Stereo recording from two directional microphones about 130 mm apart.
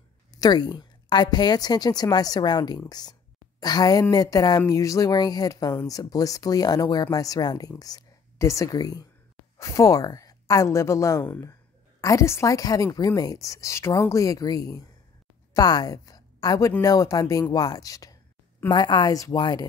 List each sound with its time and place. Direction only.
0.3 s a woman's voice: 30° left (ahead or behind)